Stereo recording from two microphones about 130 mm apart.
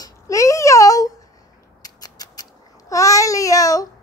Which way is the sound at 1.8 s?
30° left (ahead or behind).